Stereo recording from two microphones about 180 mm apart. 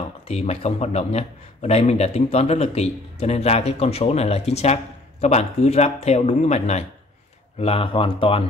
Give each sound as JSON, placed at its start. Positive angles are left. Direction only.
{"t": 0.3, "sound": "speech", "side_deg": 35}